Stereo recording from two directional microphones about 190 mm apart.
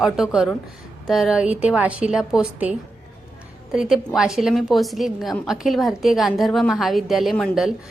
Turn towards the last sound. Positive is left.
turn(degrees=0)  # may be behind; listen again after turning